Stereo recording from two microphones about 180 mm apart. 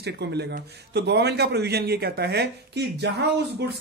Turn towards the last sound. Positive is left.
turn(degrees=-70)  # may be behind; listen again after turning